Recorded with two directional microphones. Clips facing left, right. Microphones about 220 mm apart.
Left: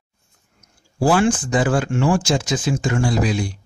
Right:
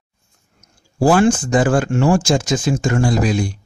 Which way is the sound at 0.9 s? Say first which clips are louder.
Right 3 dB; 45° right (ahead or behind).